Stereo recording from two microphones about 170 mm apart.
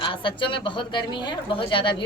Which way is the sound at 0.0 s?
30° left (ahead or behind).